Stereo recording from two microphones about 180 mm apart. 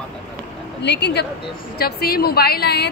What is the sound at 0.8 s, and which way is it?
A woman's voice, 70° left (ahead or behind).